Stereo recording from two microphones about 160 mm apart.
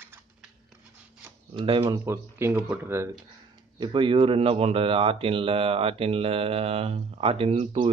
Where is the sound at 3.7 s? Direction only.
30° right (ahead or behind).